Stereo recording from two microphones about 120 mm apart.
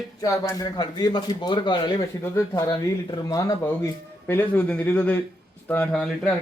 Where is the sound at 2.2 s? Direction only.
30° left (ahead or behind).